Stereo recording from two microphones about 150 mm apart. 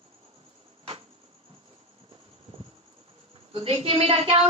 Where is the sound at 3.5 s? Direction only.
40° right (ahead or behind).